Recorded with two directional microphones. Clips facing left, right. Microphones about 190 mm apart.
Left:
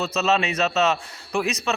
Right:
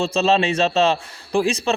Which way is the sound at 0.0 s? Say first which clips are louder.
Right 4 dB; 30° right (ahead or behind).